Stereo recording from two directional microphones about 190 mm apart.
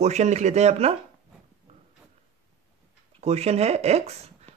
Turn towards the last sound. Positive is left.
turn(degrees=-35)  # may be behind; listen again after turning